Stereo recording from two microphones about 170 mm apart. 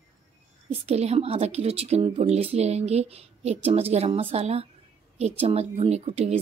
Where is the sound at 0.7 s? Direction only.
35° right (ahead or behind).